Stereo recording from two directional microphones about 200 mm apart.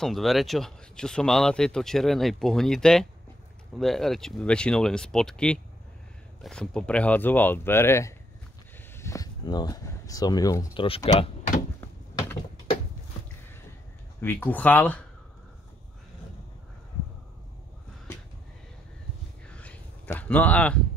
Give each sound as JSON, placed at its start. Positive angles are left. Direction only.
{"t": 0.0, "sound": "speech", "side_deg": 0}
{"t": 10.7, "sound": "speech", "side_deg": 30}
{"t": 14.2, "sound": "speech", "side_deg": 10}
{"t": 19.4, "sound": "a sound", "side_deg": 5}